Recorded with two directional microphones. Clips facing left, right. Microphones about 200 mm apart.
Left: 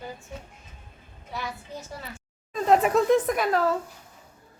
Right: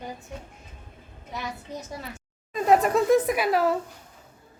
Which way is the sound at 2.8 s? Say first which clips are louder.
Even; 5° right (ahead or behind).